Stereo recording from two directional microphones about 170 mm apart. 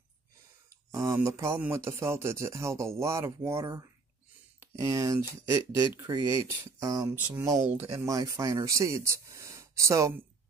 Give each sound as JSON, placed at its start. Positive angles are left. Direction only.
{"t": 0.7, "sound": "speech", "side_deg": -20}
{"t": 7.5, "sound": "speech", "side_deg": -45}
{"t": 7.9, "sound": "speech", "side_deg": -20}